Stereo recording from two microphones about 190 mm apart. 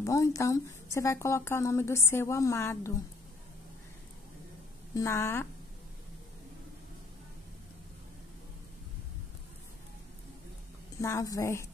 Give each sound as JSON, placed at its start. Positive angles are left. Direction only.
{"t": 0.0, "sound": "speech", "side_deg": 15}
{"t": 4.9, "sound": "speech", "side_deg": 15}
{"t": 11.0, "sound": "speech", "side_deg": 15}